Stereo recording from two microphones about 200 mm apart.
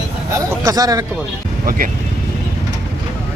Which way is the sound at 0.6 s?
20° right (ahead or behind).